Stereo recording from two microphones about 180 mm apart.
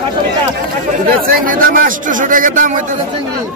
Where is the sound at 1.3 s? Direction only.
50° right (ahead or behind).